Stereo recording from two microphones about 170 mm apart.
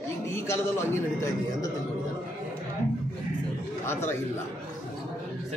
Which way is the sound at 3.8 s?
15° left (ahead or behind).